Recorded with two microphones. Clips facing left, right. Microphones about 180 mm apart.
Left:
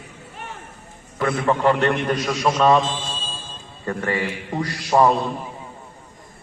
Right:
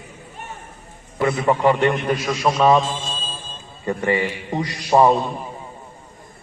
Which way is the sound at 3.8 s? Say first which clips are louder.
Right 3 dB; 15° right (ahead or behind).